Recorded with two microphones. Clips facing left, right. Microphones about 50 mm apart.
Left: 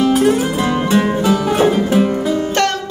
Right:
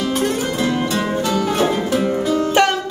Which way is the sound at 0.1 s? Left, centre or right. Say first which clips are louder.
Left 6 dB; centre.